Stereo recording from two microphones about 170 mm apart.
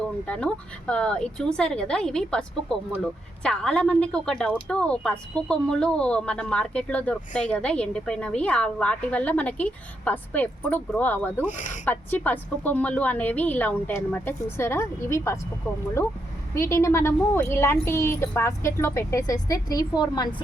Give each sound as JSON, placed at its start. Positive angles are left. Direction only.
{"t": 0.3, "sound": "a woman's voice", "side_deg": 5}
{"t": 11.5, "sound": "speech", "side_deg": 45}
{"t": 11.9, "sound": "a woman's voice", "side_deg": 10}
{"t": 16.6, "sound": "a woman's voice", "side_deg": 15}